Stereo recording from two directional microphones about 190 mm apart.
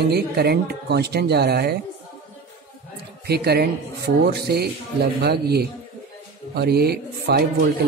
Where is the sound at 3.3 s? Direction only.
60° right (ahead or behind).